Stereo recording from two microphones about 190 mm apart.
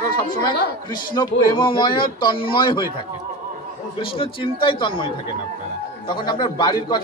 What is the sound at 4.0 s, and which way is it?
A man's voice, 25° left (ahead or behind).